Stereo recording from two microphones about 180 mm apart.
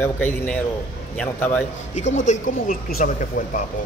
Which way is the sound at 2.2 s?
40° left (ahead or behind).